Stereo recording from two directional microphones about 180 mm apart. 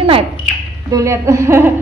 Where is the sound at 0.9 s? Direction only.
15° right (ahead or behind).